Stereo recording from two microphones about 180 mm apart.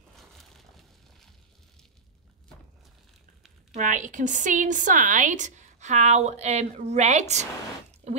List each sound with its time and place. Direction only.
3.7 s a woman's voice: 45° right (ahead or behind)
8.0 s drip: 35° right (ahead or behind)